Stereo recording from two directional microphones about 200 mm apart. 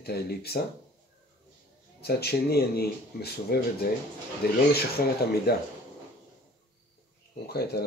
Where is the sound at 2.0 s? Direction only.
55° left (ahead or behind).